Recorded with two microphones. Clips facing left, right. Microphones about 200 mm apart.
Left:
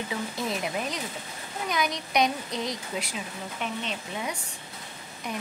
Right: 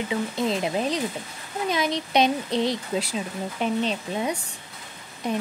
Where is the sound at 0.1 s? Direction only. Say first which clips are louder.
Right 8 dB; 25° right (ahead or behind).